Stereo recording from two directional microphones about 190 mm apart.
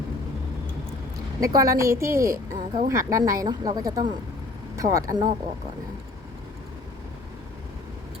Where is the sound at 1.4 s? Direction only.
20° right (ahead or behind).